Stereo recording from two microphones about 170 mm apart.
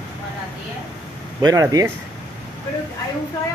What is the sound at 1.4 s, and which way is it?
Speech, 20° right (ahead or behind).